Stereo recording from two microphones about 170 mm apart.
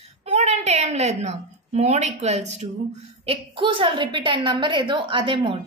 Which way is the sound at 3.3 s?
30° right (ahead or behind).